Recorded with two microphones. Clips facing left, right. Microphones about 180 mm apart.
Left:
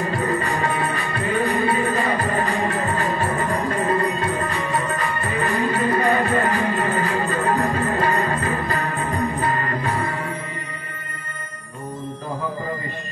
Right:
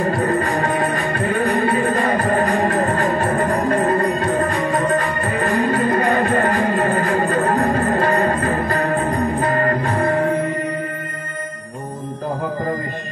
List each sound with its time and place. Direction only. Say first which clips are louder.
0.2 s music: right 4 dB; 40° right (ahead or behind)